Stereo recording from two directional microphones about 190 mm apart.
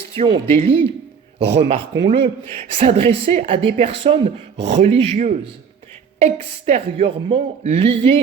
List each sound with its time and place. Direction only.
0.2 s a woman's voice: 30° right (ahead or behind)